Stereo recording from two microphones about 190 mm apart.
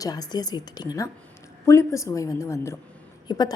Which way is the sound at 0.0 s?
20° left (ahead or behind).